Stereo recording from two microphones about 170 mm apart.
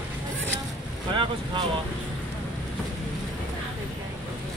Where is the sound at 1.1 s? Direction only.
30° right (ahead or behind).